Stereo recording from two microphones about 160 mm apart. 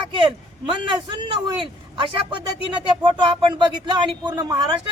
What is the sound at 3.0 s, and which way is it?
Speech, 30° right (ahead or behind).